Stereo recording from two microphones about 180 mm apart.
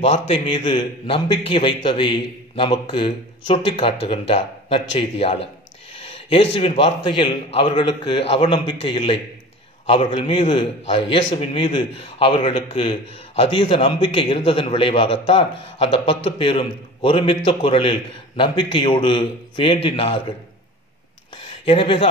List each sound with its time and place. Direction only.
0.3 s a man's voice: 30° left (ahead or behind)
21.6 s a man's voice: 30° left (ahead or behind)